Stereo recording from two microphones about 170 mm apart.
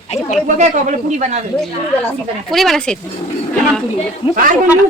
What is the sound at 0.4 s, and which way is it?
Speech, 45° right (ahead or behind).